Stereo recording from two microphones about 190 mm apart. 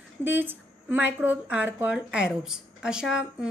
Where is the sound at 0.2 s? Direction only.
10° right (ahead or behind).